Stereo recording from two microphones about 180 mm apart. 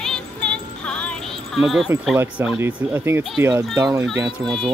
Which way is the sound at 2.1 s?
10° right (ahead or behind).